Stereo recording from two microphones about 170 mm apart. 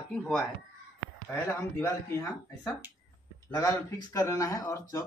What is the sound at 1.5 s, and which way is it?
Speech, 15° left (ahead or behind).